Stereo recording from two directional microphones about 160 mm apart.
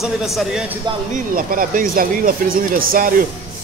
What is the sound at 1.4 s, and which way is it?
A man's voice, 55° right (ahead or behind).